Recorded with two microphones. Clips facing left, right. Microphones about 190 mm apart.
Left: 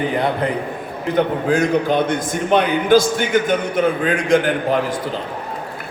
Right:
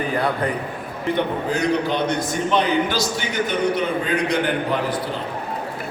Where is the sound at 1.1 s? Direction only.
50° left (ahead or behind).